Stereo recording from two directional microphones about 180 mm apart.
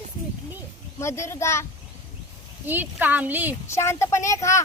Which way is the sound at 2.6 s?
10° right (ahead or behind).